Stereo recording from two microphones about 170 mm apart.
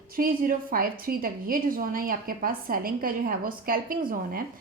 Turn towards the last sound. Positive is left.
turn(degrees=-60)  # may be behind; listen again after turning